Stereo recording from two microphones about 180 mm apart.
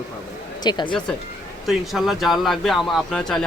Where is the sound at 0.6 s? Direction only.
25° left (ahead or behind).